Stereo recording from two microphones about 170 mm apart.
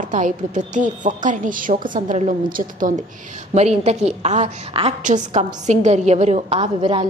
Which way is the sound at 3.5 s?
40° right (ahead or behind).